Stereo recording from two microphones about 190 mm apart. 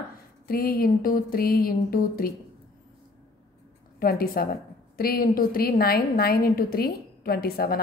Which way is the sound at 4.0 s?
50° left (ahead or behind).